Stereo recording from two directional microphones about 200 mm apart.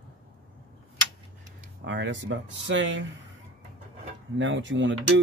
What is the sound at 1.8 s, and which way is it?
Speech, 65° right (ahead or behind).